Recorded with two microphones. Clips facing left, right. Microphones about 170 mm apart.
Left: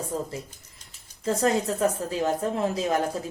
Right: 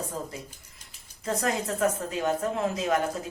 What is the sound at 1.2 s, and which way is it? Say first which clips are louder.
Speech: left 5 dB; 30° left (ahead or behind).